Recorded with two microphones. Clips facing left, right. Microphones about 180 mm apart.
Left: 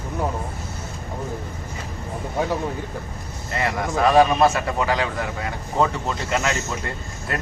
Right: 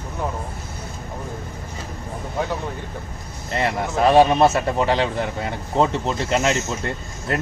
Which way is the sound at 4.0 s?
30° right (ahead or behind).